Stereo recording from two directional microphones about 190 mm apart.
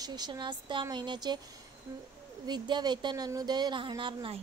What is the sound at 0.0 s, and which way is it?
A woman's voice, 20° right (ahead or behind).